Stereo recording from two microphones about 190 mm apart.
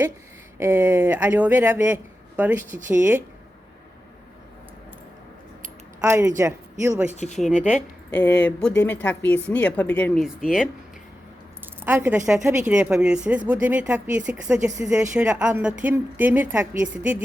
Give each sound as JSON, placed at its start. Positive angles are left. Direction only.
{"t": 0.6, "sound": "a woman's voice", "side_deg": -10}
{"t": 6.0, "sound": "a woman's voice", "side_deg": -15}
{"t": 7.1, "sound": "speech", "side_deg": 35}
{"t": 7.3, "sound": "a woman's voice", "side_deg": 5}
{"t": 10.2, "sound": "speech", "side_deg": -5}
{"t": 11.9, "sound": "a woman's voice", "side_deg": -10}